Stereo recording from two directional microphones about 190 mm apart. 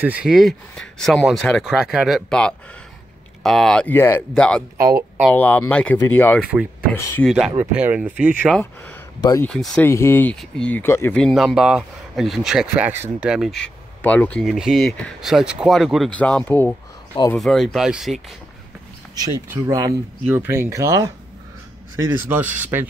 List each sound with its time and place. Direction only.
0.0 s speech: 5° right (ahead or behind)
4.7 s speech: 50° right (ahead or behind)
5.3 s speech: 10° left (ahead or behind)
6.4 s speech: 5° right (ahead or behind)
9.2 s speech: 15° left (ahead or behind)
9.5 s speech: centre (ahead or behind)
9.8 s speech: 15° left (ahead or behind); by 13.5 s 5° right (ahead or behind)
13.6 s speech: 10° left (ahead or behind)
19.5 s speech: 20° right (ahead or behind)
22.1 s speech: 10° right (ahead or behind)